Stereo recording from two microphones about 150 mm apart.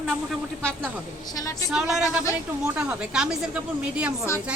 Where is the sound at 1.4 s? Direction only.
25° left (ahead or behind).